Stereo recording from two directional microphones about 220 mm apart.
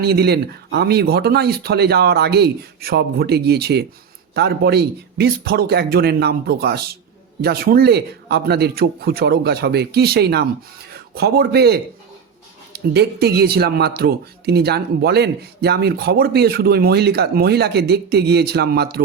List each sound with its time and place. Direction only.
0.0 s speech: 45° right (ahead or behind)